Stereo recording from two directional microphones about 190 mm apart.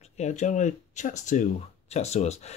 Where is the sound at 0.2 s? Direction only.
40° left (ahead or behind).